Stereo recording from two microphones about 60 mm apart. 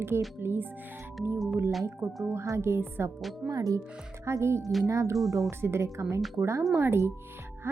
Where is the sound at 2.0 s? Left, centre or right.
Right.